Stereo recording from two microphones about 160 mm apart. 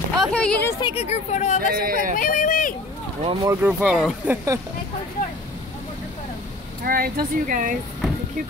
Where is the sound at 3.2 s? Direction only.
35° right (ahead or behind).